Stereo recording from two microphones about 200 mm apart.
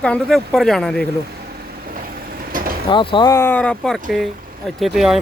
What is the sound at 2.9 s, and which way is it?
Speech, 25° left (ahead or behind).